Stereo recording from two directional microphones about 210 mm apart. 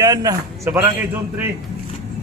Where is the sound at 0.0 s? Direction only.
15° right (ahead or behind).